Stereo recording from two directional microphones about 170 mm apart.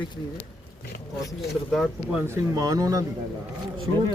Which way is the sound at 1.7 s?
Centre (ahead or behind).